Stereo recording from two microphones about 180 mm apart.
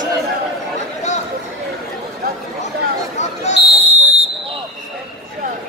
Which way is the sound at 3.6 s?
35° right (ahead or behind).